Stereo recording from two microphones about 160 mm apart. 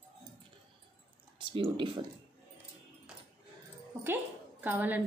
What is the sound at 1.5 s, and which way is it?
Speech, 35° right (ahead or behind).